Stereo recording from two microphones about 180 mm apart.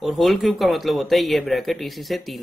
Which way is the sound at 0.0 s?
Centre (ahead or behind).